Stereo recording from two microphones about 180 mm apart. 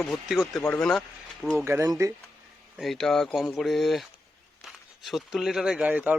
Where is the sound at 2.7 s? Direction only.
Centre (ahead or behind).